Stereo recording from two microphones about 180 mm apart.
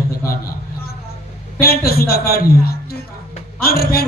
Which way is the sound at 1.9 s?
60° left (ahead or behind).